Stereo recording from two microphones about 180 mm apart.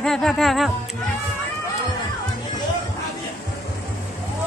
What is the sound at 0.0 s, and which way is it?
Speech, centre (ahead or behind).